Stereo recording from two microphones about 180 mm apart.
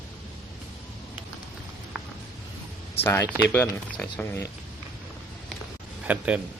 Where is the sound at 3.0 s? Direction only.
15° left (ahead or behind).